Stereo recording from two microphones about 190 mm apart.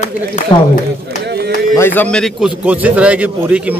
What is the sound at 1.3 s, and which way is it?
Speech, 55° right (ahead or behind).